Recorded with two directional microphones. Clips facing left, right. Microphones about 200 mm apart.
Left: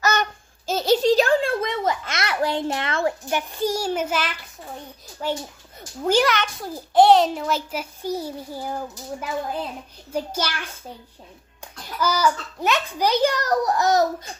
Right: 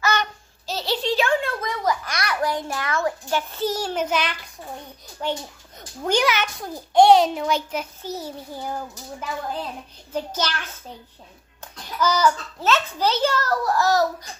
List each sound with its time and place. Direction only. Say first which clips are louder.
0.0 s a sound: left 1 dB; 45° left (ahead or behind); by 3.2 s 25° left (ahead or behind)
3.3 s a child's voice: even; 15° left (ahead or behind)
10.1 s a child's voice: even; 10° left (ahead or behind)
12.0 s a child's voice: right 1 dB; 10° left (ahead or behind)